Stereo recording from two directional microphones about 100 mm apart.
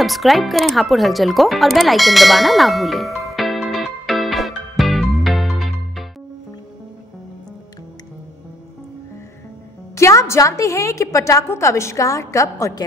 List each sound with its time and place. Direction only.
0.0 s speech: centre (ahead or behind)
3.7 s music: centre (ahead or behind)
9.9 s a woman's voice: 30° left (ahead or behind)